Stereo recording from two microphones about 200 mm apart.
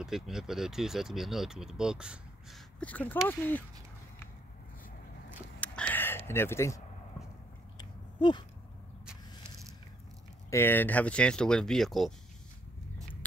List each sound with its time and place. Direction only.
0.0 s speech: centre (ahead or behind)
2.8 s speech: 5° left (ahead or behind)
5.6 s a sound: 5° left (ahead or behind)
10.5 s speech: 10° left (ahead or behind)